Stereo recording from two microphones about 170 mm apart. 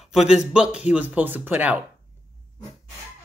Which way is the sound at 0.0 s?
5° right (ahead or behind).